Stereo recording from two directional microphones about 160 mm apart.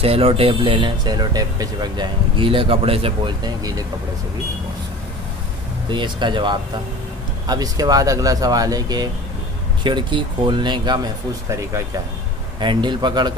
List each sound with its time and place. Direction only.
0.0 s speech: 35° right (ahead or behind)
5.9 s speech: 30° right (ahead or behind)
12.5 s speech: 30° right (ahead or behind)